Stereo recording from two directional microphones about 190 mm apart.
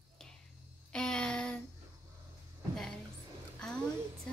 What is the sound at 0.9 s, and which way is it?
Speech, 5° left (ahead or behind).